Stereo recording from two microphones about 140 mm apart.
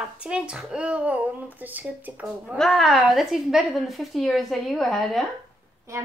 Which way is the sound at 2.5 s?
Centre (ahead or behind).